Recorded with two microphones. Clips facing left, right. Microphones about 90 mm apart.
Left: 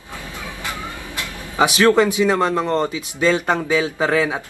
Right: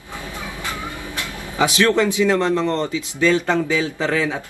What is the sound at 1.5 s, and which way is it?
Speech, 20° left (ahead or behind).